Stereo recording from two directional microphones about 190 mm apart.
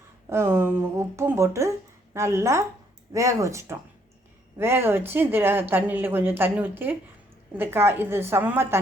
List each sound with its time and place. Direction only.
0.3 s speech: 10° right (ahead or behind)